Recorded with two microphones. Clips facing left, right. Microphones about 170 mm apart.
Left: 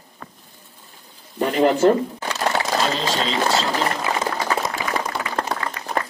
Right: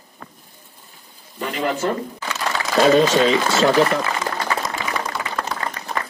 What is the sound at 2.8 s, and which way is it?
Speech, 70° right (ahead or behind).